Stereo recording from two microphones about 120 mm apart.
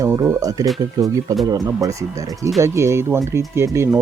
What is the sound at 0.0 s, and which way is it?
Speech, 25° right (ahead or behind).